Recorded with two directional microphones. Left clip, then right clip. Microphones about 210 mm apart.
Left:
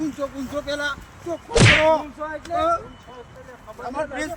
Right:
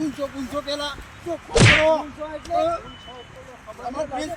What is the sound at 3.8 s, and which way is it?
Whack, 5° left (ahead or behind).